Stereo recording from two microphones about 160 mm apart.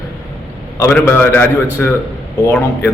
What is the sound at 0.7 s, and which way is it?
A man's voice, 15° left (ahead or behind).